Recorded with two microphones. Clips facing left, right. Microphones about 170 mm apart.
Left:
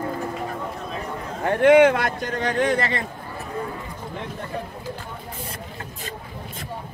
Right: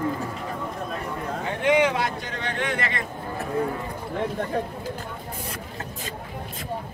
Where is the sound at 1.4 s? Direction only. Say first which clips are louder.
Left 7 dB; 55° left (ahead or behind); by 3.0 s 35° left (ahead or behind).